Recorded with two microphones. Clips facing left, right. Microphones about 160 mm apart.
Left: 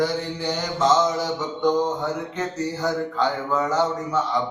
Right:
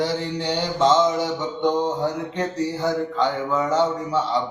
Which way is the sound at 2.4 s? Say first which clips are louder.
Right 2 dB; 25° right (ahead or behind).